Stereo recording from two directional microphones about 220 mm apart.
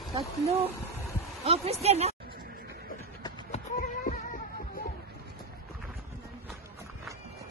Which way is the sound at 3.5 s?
35° left (ahead or behind).